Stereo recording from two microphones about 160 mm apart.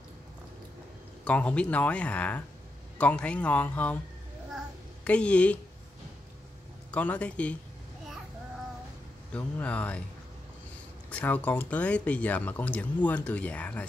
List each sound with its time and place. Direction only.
1.2 s speech: 10° left (ahead or behind)
5.0 s speech: 10° left (ahead or behind)
6.9 s speech: 10° left (ahead or behind)
9.3 s speech: 10° left (ahead or behind)
11.1 s speech: 10° left (ahead or behind)